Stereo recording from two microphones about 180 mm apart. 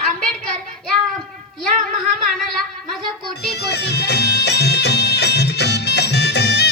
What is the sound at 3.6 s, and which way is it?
Music, 65° left (ahead or behind).